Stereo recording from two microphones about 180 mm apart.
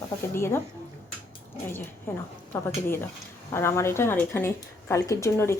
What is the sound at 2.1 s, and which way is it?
Speech, 10° left (ahead or behind).